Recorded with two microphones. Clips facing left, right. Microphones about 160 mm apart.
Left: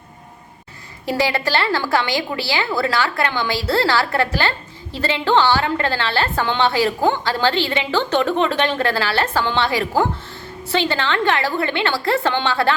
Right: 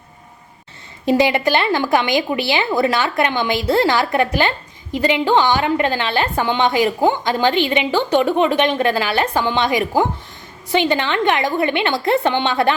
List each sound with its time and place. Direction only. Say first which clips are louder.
1.0 s a woman's voice: right 5 dB; 20° right (ahead or behind)